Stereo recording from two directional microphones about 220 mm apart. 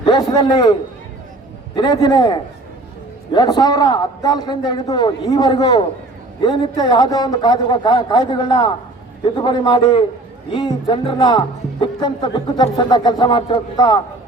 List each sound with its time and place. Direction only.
0.0 s a man's voice: 20° left (ahead or behind)